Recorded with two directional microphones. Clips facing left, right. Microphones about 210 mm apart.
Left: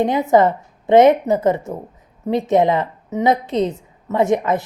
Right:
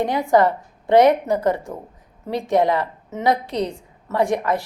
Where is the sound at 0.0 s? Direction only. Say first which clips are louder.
Left 3 dB; 20° left (ahead or behind).